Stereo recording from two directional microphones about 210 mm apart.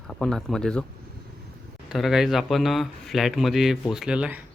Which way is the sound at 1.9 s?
Centre (ahead or behind).